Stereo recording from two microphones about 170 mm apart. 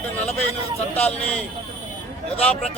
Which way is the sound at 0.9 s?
35° left (ahead or behind).